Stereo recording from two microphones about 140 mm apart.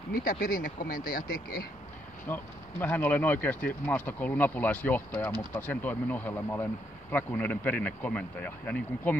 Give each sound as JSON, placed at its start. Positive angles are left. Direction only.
{"t": 0.1, "sound": "speech", "side_deg": 85}
{"t": 2.2, "sound": "speech", "side_deg": 15}